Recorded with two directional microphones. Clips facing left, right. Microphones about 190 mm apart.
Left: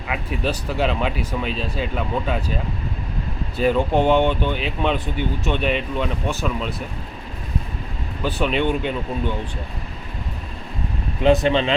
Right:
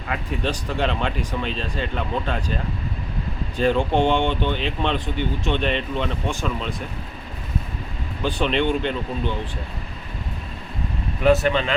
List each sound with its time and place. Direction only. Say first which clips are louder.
0.1 s speech: left 1 dB; 10° left (ahead or behind)
3.6 s speech: left 1 dB; 10° left (ahead or behind)
8.2 s speech: even; 5° left (ahead or behind)
11.2 s speech: left 1 dB; 20° left (ahead or behind)